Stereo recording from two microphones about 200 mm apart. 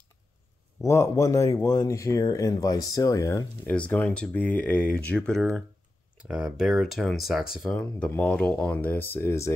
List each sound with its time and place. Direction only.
0.7 s speech: 15° left (ahead or behind)